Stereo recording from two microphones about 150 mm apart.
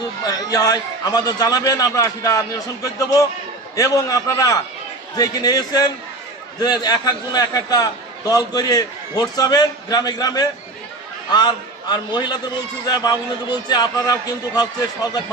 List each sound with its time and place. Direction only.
0.2 s a man's voice: 25° left (ahead or behind)